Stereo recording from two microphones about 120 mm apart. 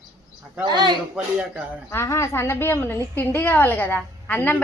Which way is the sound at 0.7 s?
35° right (ahead or behind).